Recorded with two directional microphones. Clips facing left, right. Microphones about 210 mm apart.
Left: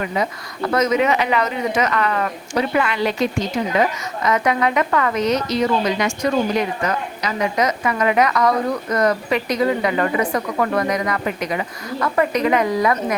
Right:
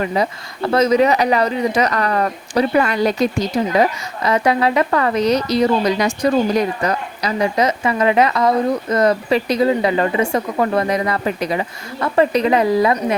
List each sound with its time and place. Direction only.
0.0 s speech: 30° right (ahead or behind)